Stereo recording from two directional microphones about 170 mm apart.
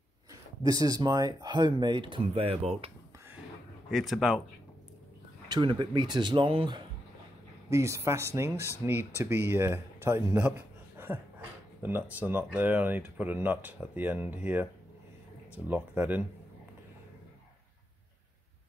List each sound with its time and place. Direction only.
0.7 s speech: 20° right (ahead or behind)
3.9 s speech: centre (ahead or behind)
5.5 s speech: 30° right (ahead or behind)
7.7 s speech: 15° right (ahead or behind)
11.8 s speech: 10° right (ahead or behind)